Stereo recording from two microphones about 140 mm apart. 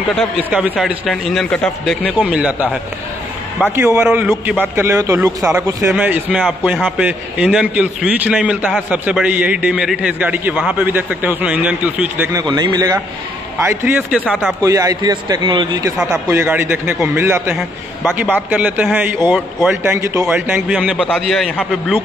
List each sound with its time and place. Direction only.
0.5 s a man's voice: 5° right (ahead or behind)
2.0 s a man's voice: 10° right (ahead or behind)
5.9 s a man's voice: 10° right (ahead or behind)
12.3 s a man's voice: 25° right (ahead or behind)
13.7 s a man's voice: 10° right (ahead or behind)
14.2 s a man's voice: 5° left (ahead or behind)
14.6 s a man's voice: 25° right (ahead or behind)
16.3 s a man's voice: 20° right (ahead or behind)
19.8 s a man's voice: 20° right (ahead or behind); by 21.9 s 5° left (ahead or behind)